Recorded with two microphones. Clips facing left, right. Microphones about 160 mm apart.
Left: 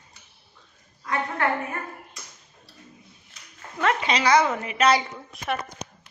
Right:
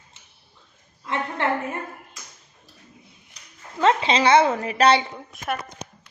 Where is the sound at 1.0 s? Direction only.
25° right (ahead or behind).